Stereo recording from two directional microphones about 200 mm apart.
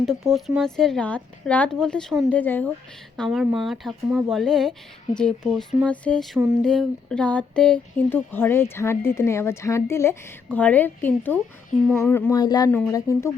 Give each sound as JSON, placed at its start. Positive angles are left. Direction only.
{"t": 0.0, "sound": "speech", "side_deg": 0}